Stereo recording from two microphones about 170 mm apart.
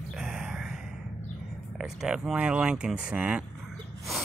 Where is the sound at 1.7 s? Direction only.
5° right (ahead or behind).